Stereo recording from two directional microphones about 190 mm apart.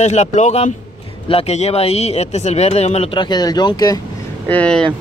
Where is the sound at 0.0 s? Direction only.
35° left (ahead or behind); by 4.0 s 20° left (ahead or behind).